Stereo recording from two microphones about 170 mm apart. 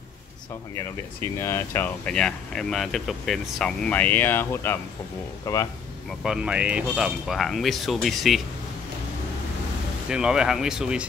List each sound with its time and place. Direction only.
1.4 s speech: 15° left (ahead or behind)
6.2 s speech: 5° right (ahead or behind)
10.0 s speech: 5° right (ahead or behind)